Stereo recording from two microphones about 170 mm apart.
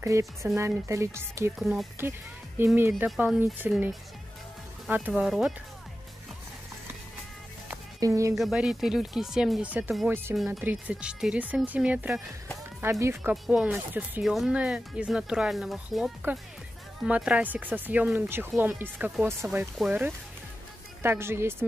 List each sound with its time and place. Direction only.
0.0 s speech: 20° right (ahead or behind)
1.6 s speech: centre (ahead or behind)
2.6 s speech: 15° right (ahead or behind)
8.0 s speech: 20° right (ahead or behind)
8.4 s speech: 5° right (ahead or behind)
10.3 s speech: centre (ahead or behind)